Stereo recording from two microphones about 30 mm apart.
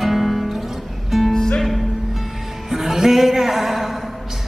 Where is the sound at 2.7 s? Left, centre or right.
Centre.